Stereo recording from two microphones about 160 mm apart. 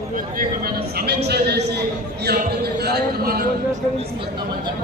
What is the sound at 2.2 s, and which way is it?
Music, 85° right.